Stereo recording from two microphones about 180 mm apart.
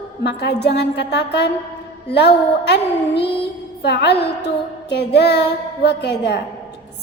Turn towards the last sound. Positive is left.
turn(degrees=70)  # may be behind; listen again after turning